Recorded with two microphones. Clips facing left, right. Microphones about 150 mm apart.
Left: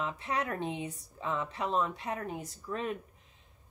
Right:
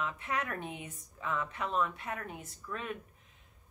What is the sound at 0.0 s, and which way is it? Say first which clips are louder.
Speech: left 2 dB; 30° left (ahead or behind).